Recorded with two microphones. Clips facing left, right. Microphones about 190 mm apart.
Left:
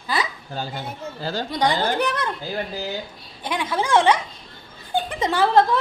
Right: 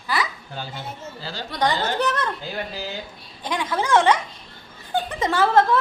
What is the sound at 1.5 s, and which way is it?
Speech, 10° left (ahead or behind).